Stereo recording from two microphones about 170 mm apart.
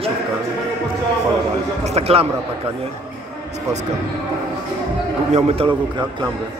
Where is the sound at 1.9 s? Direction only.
35° right (ahead or behind).